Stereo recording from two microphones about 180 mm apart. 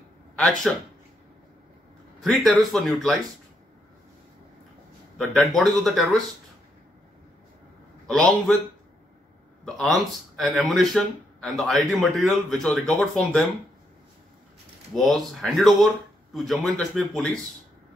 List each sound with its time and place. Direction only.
0.4 s speech: 5° left (ahead or behind)
2.1 s speech: centre (ahead or behind)
5.1 s speech: 5° left (ahead or behind)
8.1 s speech: 5° left (ahead or behind)
9.8 s speech: centre (ahead or behind)
15.0 s speech: centre (ahead or behind)